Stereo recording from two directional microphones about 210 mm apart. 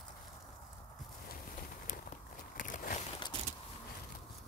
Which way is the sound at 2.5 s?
40° left (ahead or behind).